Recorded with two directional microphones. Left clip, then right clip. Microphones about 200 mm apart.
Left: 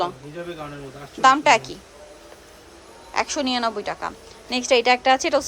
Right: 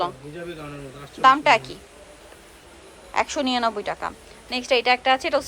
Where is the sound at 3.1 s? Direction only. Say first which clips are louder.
Even; 15° left (ahead or behind).